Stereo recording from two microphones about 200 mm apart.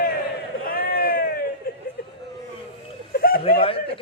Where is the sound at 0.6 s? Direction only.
45° left (ahead or behind).